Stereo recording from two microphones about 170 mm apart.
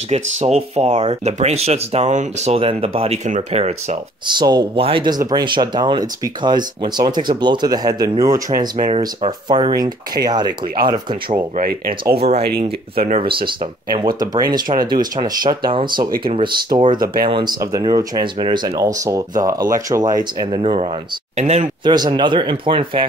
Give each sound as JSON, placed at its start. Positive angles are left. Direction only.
{"t": 0.1, "sound": "speech", "side_deg": -40}
{"t": 4.3, "sound": "speech", "side_deg": -25}
{"t": 8.8, "sound": "speech", "side_deg": -30}
{"t": 11.5, "sound": "speech", "side_deg": -60}
{"t": 12.2, "sound": "speech", "side_deg": -35}
{"t": 17.0, "sound": "speech", "side_deg": -60}
{"t": 17.6, "sound": "speech", "side_deg": -20}
{"t": 21.8, "sound": "speech", "side_deg": -25}